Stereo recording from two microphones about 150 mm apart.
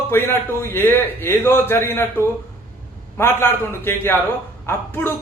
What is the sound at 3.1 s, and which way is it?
A man's voice, 15° left (ahead or behind).